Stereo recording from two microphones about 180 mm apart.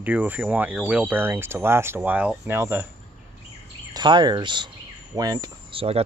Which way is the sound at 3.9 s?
25° right (ahead or behind).